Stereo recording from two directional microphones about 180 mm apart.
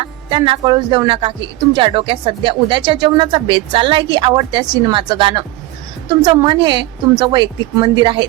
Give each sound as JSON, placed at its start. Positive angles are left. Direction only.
{"t": 0.0, "sound": "speech", "side_deg": -30}